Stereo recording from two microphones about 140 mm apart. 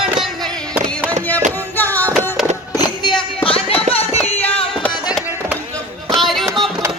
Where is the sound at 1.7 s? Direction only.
10° left (ahead or behind).